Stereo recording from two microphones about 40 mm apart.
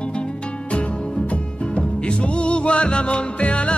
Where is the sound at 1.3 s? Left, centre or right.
Left.